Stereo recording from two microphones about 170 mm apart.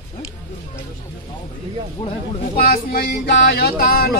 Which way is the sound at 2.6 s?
60° left (ahead or behind).